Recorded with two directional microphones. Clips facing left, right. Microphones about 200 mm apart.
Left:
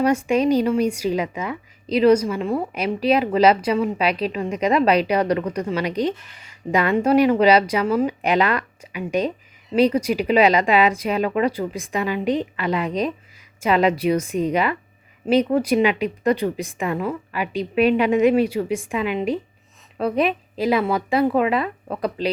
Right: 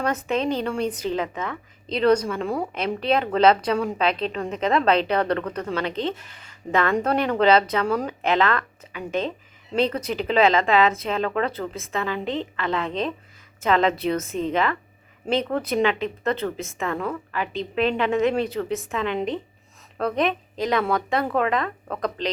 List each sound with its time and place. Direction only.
0.0 s speech: 10° left (ahead or behind)